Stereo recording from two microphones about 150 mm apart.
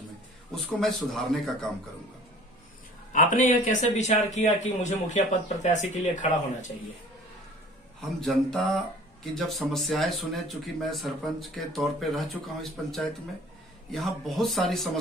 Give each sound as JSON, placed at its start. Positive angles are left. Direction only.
{"t": 0.6, "sound": "speech", "side_deg": 0}
{"t": 3.1, "sound": "a man's voice", "side_deg": 60}
{"t": 8.0, "sound": "speech", "side_deg": 0}